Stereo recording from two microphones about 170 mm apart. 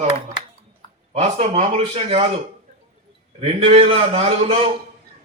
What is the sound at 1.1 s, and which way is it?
A man's voice, 40° right (ahead or behind).